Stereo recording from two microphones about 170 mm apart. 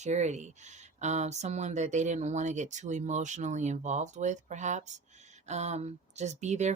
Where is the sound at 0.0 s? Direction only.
45° right (ahead or behind).